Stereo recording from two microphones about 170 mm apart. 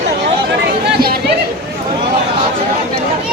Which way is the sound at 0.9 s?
65° right (ahead or behind).